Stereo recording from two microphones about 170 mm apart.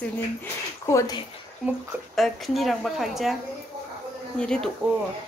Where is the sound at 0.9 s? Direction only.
15° left (ahead or behind).